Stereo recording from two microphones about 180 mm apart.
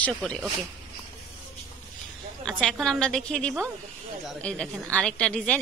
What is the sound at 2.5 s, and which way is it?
A woman's voice, 5° left (ahead or behind).